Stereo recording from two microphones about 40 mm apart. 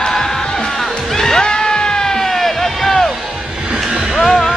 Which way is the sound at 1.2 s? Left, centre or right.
Centre.